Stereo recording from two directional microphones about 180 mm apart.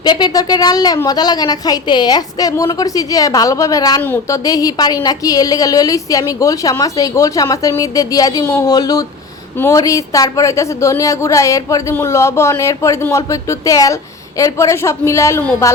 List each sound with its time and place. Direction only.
0.0 s a woman's voice: 25° left (ahead or behind)